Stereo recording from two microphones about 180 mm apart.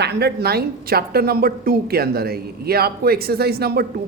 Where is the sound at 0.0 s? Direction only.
65° right (ahead or behind).